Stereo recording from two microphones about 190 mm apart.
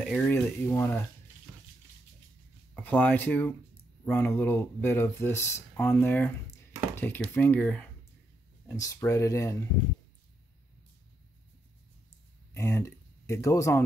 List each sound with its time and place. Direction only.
0.0 s speech: 5° left (ahead or behind)
2.7 s speech: 10° left (ahead or behind)
12.5 s speech: 15° left (ahead or behind)